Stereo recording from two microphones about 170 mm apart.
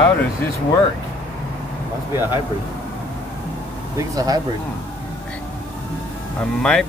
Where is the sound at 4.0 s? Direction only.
20° right (ahead or behind).